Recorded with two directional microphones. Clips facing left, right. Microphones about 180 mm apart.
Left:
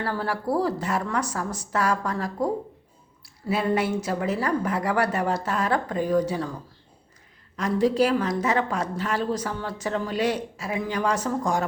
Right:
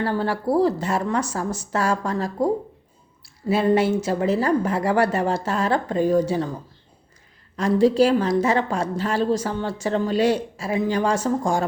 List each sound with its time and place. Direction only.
0.0 s a woman's voice: 25° right (ahead or behind)